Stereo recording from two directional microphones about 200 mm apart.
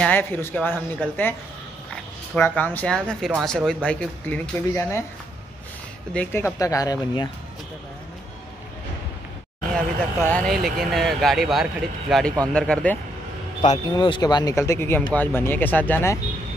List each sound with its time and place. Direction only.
0.0 s speech: 10° left (ahead or behind)
2.3 s speech: 10° left (ahead or behind)
6.1 s speech: 10° left (ahead or behind)
10.3 s speech: centre (ahead or behind)
13.6 s speech: 20° left (ahead or behind)